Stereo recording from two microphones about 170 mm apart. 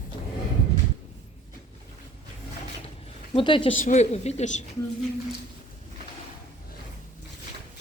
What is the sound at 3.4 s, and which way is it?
Speech, 30° left (ahead or behind).